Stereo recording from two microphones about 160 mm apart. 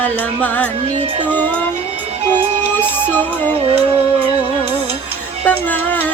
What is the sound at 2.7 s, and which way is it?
Music, 10° left (ahead or behind).